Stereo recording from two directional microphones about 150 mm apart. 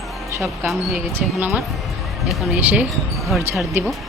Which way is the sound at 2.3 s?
10° right (ahead or behind).